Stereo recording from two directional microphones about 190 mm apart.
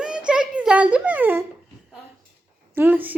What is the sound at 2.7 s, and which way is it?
Speech, 10° right (ahead or behind).